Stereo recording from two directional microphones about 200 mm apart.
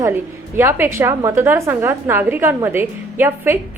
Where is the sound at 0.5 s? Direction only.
10° right (ahead or behind).